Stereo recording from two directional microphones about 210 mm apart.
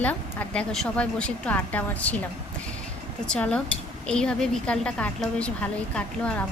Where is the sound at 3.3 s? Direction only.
5° left (ahead or behind).